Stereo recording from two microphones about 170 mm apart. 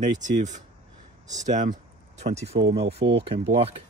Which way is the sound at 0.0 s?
45° right (ahead or behind).